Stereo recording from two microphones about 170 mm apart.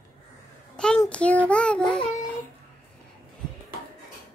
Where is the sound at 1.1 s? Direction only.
10° left (ahead or behind).